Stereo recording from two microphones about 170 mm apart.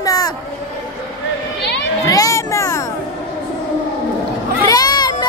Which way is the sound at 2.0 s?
20° left (ahead or behind).